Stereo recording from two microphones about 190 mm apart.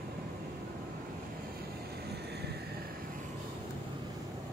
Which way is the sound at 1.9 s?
60° right (ahead or behind).